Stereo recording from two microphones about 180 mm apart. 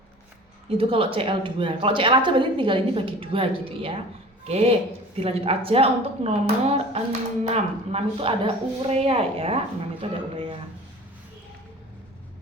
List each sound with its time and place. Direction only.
0.8 s a woman's voice: 30° right (ahead or behind)